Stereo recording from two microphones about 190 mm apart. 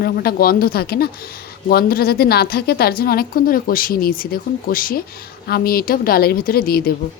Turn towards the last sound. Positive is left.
turn(degrees=50)  # may be behind; listen again after turning